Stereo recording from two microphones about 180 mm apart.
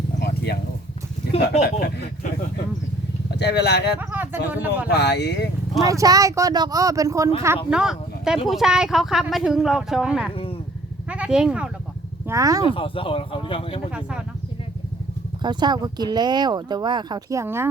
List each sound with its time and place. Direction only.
0.2 s a sound: 60° left (ahead or behind)
1.6 s speech: 60° left (ahead or behind)
3.9 s speech: 10° right (ahead or behind)
4.9 s speech: 65° left (ahead or behind)
5.9 s speech: 20° right (ahead or behind)
7.7 s speech: 5° right (ahead or behind)
10.3 s vehicle: 30° left (ahead or behind)
11.1 s speech: 5° right (ahead or behind)
12.3 s speech: 20° right (ahead or behind)
12.7 s speech: 30° left (ahead or behind)
13.9 s speech: 5° right (ahead or behind)
15.4 s speech: 25° right (ahead or behind)